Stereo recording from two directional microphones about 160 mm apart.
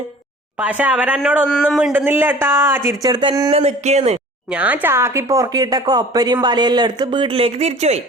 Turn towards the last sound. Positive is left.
turn(degrees=-40)  # may be behind; listen again after turning